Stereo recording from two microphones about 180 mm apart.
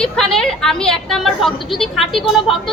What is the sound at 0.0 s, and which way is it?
A woman's voice, 5° left (ahead or behind).